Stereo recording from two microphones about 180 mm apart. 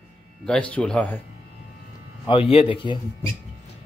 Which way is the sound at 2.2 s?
30° left (ahead or behind).